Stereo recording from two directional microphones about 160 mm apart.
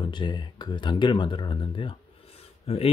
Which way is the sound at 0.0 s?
30° left (ahead or behind).